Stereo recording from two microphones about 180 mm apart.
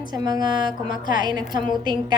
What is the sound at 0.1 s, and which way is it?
Speech, 20° right (ahead or behind).